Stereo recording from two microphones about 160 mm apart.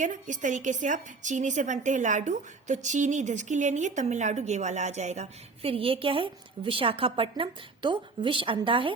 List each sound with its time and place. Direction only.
0.0 s a woman's voice: 50° right (ahead or behind); by 8.9 s 35° right (ahead or behind)